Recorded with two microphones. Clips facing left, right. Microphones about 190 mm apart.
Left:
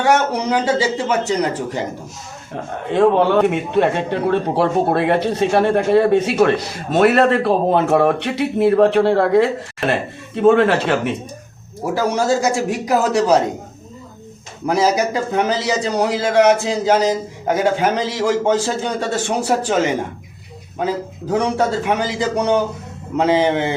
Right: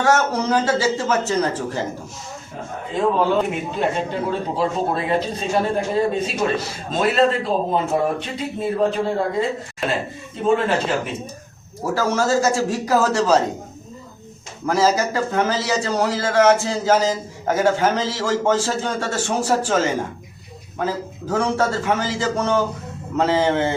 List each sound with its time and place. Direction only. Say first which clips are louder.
0.0 s a man's voice: left 2 dB; 15° left (ahead or behind)
2.9 s speech: left 5 dB; 70° left (ahead or behind)
11.9 s a man's voice: left 2 dB; 15° left (ahead or behind)
14.7 s a man's voice: left 2 dB; 15° left (ahead or behind)